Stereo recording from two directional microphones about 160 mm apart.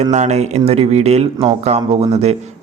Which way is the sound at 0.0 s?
45° right (ahead or behind).